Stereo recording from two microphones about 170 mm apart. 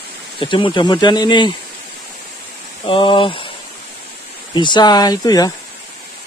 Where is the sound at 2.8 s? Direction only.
30° left (ahead or behind).